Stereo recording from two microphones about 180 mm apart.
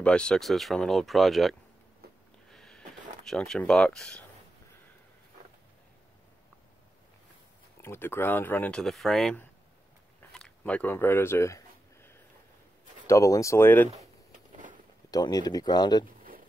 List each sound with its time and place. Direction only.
0.0 s speech: 5° left (ahead or behind)
2.5 s a sound: 5° left (ahead or behind)
3.3 s speech: 5° left (ahead or behind)
7.8 s speech: 15° left (ahead or behind)
10.3 s a sound: 5° left (ahead or behind)
13.0 s speech: 15° left (ahead or behind)
15.0 s speech: 20° left (ahead or behind)